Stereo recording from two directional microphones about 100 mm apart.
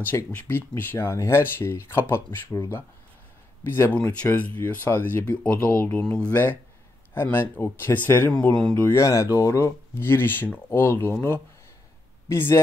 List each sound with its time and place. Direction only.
0.0 s speech: 20° left (ahead or behind)
3.6 s speech: 20° left (ahead or behind)
8.3 s speech: 10° left (ahead or behind)
8.9 s speech: 30° left (ahead or behind)